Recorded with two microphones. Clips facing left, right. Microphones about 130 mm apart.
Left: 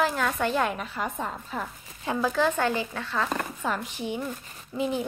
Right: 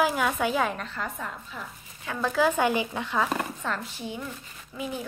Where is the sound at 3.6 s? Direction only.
15° left (ahead or behind).